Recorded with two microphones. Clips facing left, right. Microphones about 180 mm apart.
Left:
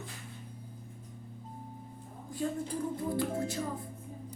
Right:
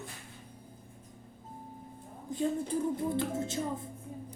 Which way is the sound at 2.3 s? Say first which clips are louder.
Right 3 dB; 20° right (ahead or behind).